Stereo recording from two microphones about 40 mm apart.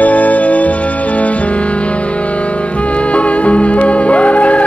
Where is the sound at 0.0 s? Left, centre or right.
Left.